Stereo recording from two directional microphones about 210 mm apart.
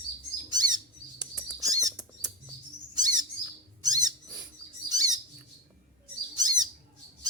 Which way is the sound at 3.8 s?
20° right (ahead or behind).